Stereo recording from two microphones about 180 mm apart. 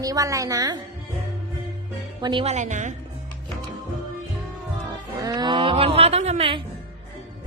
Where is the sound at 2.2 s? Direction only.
30° right (ahead or behind).